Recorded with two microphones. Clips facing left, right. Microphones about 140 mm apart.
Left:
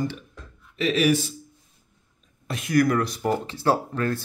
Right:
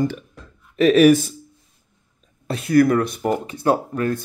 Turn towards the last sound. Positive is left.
turn(degrees=-15)  # may be behind; listen again after turning